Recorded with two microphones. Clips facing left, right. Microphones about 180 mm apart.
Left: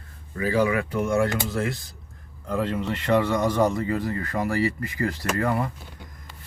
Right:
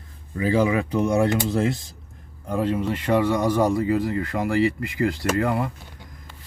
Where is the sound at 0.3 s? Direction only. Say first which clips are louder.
Right 2 dB; 25° right (ahead or behind).